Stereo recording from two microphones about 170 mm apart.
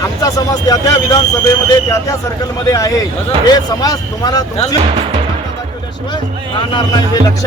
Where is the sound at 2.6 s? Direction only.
20° left (ahead or behind).